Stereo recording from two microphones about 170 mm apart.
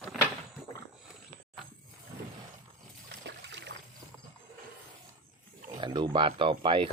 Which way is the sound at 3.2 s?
90° right.